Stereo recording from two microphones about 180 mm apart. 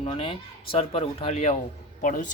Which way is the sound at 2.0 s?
45° left (ahead or behind).